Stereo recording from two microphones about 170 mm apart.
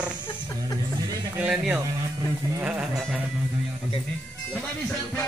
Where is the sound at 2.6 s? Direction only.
5° right (ahead or behind).